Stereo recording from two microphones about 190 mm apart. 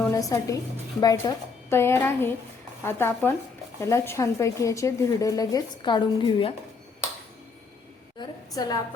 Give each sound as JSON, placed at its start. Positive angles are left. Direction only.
{"t": 0.0, "sound": "a woman's voice", "side_deg": 15}
{"t": 8.5, "sound": "a woman's voice", "side_deg": 20}